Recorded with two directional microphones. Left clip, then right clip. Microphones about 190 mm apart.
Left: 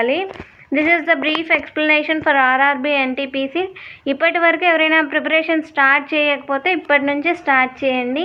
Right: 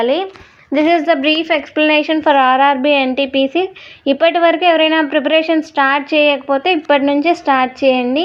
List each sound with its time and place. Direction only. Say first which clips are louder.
0.0 s speech: right 3 dB; centre (ahead or behind)
0.9 s a woman's voice: right 4 dB; 35° right (ahead or behind)